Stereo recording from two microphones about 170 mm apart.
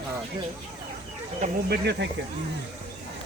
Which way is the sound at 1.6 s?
70° right (ahead or behind).